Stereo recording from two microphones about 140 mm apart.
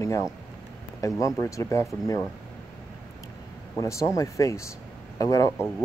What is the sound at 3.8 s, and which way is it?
Speech, 20° left (ahead or behind).